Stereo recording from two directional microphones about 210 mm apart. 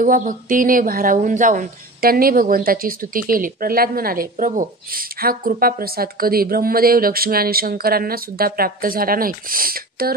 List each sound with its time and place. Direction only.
0.0 s speech: 40° right (ahead or behind)